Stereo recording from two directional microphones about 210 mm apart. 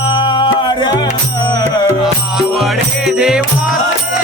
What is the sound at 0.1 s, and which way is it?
Music, 20° left (ahead or behind).